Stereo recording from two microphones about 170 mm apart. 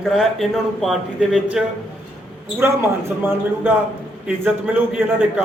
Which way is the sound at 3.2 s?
10° right (ahead or behind).